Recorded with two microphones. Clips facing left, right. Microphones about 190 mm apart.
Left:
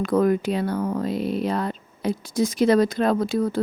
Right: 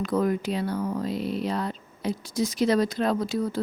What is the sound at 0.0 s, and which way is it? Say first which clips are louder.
Speech: left 5 dB; 55° left (ahead or behind).